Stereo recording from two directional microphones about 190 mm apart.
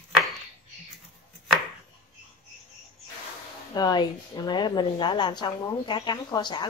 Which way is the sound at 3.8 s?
20° left (ahead or behind).